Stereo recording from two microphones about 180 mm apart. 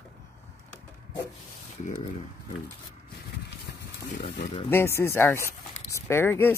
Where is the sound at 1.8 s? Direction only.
40° left (ahead or behind).